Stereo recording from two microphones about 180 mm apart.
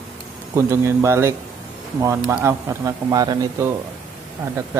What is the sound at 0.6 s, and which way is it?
Speech, 15° right (ahead or behind).